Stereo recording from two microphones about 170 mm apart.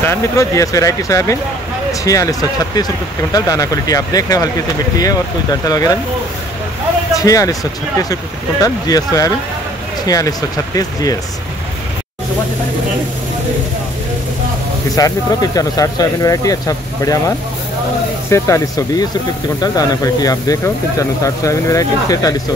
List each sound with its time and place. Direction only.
0.0 s speech: 15° left (ahead or behind)
7.2 s speech: 20° left (ahead or behind)
15.0 s speech: 20° left (ahead or behind)
18.3 s speech: 20° left (ahead or behind)